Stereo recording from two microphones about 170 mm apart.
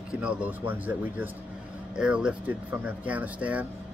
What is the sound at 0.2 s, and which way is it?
Speech, 10° right (ahead or behind).